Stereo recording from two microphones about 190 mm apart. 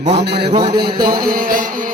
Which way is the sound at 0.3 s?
30° right (ahead or behind).